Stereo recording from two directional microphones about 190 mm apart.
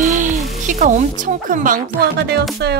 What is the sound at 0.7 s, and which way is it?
Speech, 40° right (ahead or behind).